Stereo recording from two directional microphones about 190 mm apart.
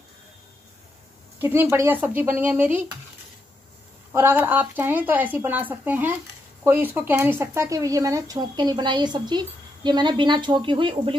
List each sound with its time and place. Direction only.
1.4 s speech: 10° right (ahead or behind)
4.1 s speech: 10° right (ahead or behind)